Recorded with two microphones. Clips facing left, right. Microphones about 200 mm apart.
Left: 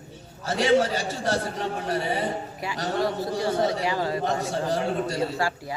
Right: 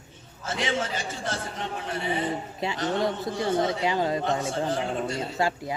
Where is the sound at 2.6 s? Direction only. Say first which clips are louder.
Right 5 dB; 25° right (ahead or behind).